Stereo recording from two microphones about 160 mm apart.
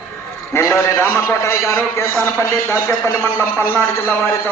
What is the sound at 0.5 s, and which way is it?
A man's voice, 15° left (ahead or behind).